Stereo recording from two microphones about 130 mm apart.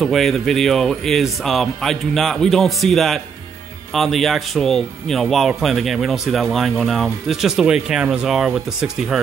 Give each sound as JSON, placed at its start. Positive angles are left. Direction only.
{"t": 0.0, "sound": "speech", "side_deg": 0}